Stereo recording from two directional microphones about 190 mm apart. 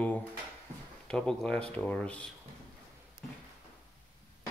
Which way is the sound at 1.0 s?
5° left (ahead or behind).